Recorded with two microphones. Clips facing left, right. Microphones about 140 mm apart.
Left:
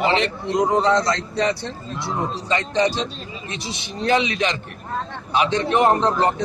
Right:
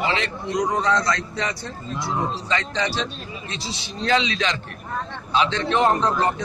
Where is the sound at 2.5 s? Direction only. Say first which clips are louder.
Left 7 dB; 20° left (ahead or behind).